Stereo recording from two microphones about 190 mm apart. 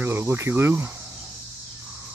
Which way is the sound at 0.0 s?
10° right (ahead or behind).